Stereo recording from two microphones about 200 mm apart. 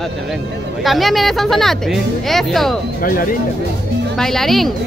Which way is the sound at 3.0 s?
45° left (ahead or behind).